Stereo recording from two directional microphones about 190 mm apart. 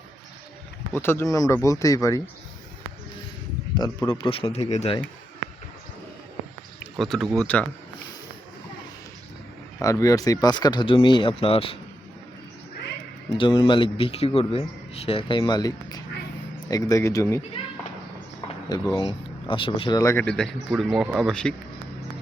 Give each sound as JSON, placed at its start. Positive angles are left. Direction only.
{"t": 0.9, "sound": "speech", "side_deg": 10}
{"t": 3.8, "sound": "speech", "side_deg": 20}
{"t": 7.0, "sound": "speech", "side_deg": 0}
{"t": 9.8, "sound": "speech", "side_deg": 15}
{"t": 13.3, "sound": "speech", "side_deg": 25}
{"t": 18.7, "sound": "speech", "side_deg": 25}